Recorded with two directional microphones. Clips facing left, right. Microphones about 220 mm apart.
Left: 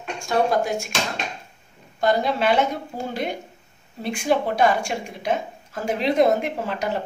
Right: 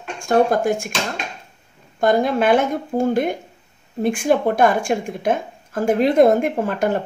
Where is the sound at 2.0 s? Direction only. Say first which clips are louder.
Right 4 dB; 50° right (ahead or behind).